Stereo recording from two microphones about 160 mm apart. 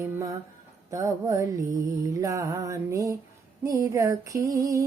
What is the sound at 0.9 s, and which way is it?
Music, 20° right (ahead or behind).